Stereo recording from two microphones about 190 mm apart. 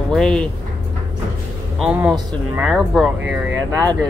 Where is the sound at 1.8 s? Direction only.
5° right (ahead or behind).